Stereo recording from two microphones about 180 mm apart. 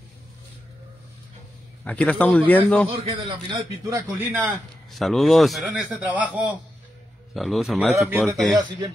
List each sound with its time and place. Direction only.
1.9 s a man's voice: 10° left (ahead or behind)
2.9 s a man's voice: 30° right (ahead or behind)
4.2 s a man's voice: 10° right (ahead or behind)
4.9 s a man's voice: centre (ahead or behind)